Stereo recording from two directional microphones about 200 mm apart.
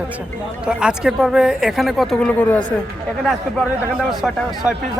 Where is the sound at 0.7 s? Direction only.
5° right (ahead or behind).